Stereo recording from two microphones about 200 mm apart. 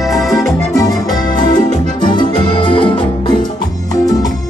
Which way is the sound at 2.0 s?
20° left (ahead or behind).